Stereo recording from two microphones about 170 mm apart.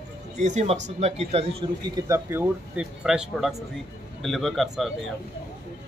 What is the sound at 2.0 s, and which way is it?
A man's voice, 15° right (ahead or behind).